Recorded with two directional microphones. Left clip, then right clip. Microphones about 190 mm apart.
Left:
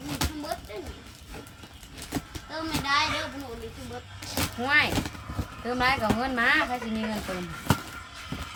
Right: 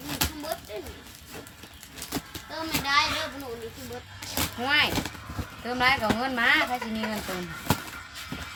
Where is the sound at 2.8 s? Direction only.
15° left (ahead or behind).